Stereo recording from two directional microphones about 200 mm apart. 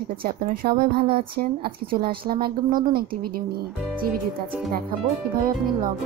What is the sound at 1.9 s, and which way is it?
Speech, 50° right (ahead or behind).